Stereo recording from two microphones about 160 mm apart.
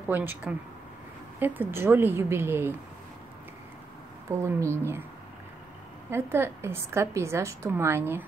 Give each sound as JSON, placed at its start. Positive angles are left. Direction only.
{"t": 0.1, "sound": "a woman's voice", "side_deg": -10}
{"t": 4.3, "sound": "a woman's voice", "side_deg": -20}
{"t": 6.0, "sound": "a woman's voice", "side_deg": -15}